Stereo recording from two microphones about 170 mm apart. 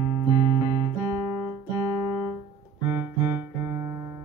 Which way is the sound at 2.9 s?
15° right (ahead or behind).